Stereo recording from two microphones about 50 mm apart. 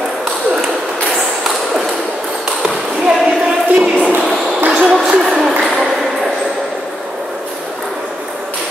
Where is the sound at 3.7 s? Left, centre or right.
Right.